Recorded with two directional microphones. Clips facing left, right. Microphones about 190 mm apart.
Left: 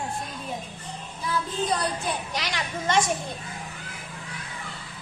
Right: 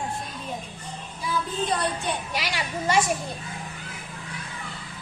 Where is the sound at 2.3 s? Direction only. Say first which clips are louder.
Right 1 dB; 10° right (ahead or behind).